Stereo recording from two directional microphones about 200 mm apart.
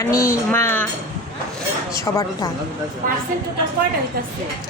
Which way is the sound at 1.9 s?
15° left (ahead or behind).